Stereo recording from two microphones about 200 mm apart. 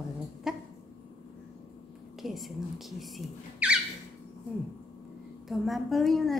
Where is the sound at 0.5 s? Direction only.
Centre (ahead or behind).